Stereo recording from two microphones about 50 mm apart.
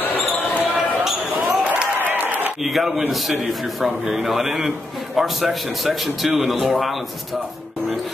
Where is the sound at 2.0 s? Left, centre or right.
Right.